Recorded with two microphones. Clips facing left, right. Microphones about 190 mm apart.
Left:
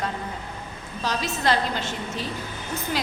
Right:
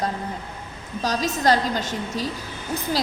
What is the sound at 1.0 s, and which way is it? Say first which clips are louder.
A woman's voice: right 4 dB; 40° right (ahead or behind).